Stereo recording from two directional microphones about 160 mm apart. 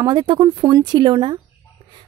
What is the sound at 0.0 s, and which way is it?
Speech, 25° right (ahead or behind).